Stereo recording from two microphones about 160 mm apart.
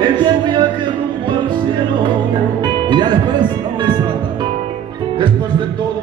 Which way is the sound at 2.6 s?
30° right (ahead or behind).